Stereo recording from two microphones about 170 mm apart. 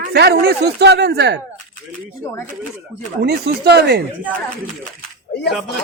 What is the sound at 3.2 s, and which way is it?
Speech, 70° right (ahead or behind).